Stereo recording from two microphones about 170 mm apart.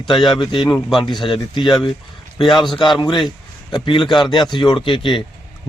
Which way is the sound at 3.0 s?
30° left (ahead or behind).